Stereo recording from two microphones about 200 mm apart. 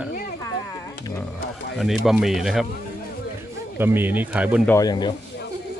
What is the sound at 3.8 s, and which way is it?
Speech, 10° right (ahead or behind).